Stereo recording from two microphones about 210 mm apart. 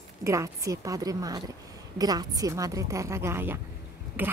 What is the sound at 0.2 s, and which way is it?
A woman's voice, 15° right (ahead or behind).